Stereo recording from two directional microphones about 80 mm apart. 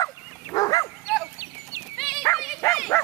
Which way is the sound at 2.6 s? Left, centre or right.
Left.